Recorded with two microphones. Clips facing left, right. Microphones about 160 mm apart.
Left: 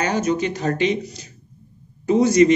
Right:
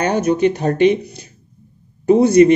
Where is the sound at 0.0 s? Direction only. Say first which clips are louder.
Right 5 dB; 60° right (ahead or behind).